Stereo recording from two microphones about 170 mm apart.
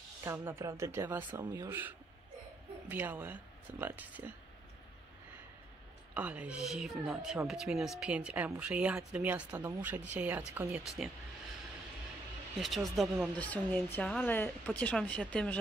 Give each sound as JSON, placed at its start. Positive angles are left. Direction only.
{"t": 0.2, "sound": "speech", "side_deg": -15}
{"t": 6.1, "sound": "speech", "side_deg": -10}
{"t": 12.5, "sound": "speech", "side_deg": 0}